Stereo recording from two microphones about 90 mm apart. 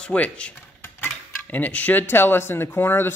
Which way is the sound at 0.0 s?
15° left (ahead or behind).